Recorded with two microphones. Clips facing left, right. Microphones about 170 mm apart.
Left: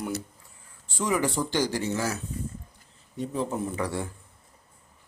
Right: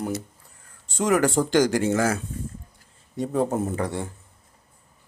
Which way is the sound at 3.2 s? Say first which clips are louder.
Right 6 dB; 50° right (ahead or behind).